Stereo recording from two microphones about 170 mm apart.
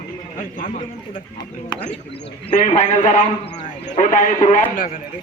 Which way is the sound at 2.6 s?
40° left (ahead or behind).